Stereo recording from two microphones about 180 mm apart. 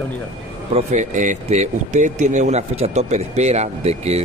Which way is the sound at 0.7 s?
40° right (ahead or behind).